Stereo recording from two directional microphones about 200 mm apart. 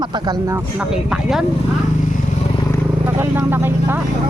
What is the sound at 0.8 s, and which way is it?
Speech, 5° right (ahead or behind).